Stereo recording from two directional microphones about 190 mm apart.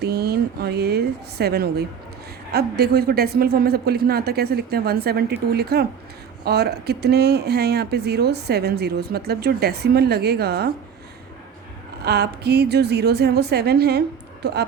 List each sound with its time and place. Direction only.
0.0 s a sound: 60° right (ahead or behind)
2.5 s speech: 55° right (ahead or behind)
12.0 s speech: 60° right (ahead or behind)